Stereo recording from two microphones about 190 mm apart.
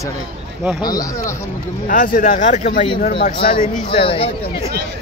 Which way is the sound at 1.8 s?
45° left (ahead or behind).